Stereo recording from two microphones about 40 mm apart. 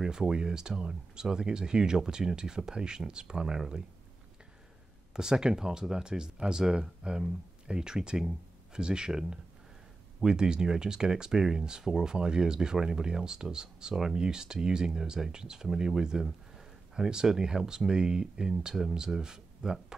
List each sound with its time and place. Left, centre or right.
0.0 s speech: centre
5.1 s speech: centre